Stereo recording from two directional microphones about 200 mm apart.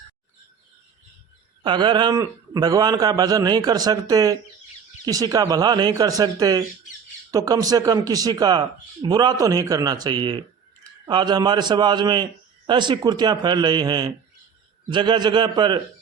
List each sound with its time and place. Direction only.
1.6 s speech: 25° right (ahead or behind)